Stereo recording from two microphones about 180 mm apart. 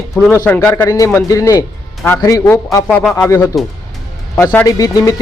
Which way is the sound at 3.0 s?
Centre (ahead or behind).